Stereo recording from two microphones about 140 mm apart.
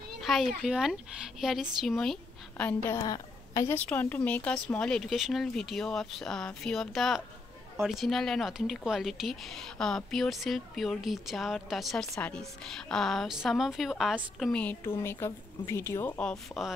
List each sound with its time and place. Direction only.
0.2 s speech: centre (ahead or behind); by 3.7 s 25° left (ahead or behind)
3.7 s speech: 15° left (ahead or behind)
14.6 s a woman's voice: 15° left (ahead or behind)